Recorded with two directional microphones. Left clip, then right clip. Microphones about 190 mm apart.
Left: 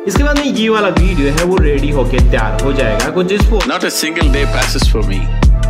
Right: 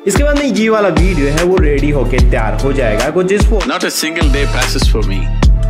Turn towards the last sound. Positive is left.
turn(degrees=0)  # may be behind; listen again after turning